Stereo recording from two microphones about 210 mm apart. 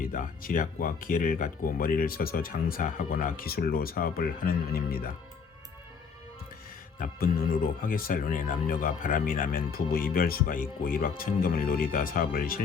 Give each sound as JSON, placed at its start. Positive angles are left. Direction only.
{"t": 0.0, "sound": "speech", "side_deg": 40}
{"t": 7.0, "sound": "speech", "side_deg": 45}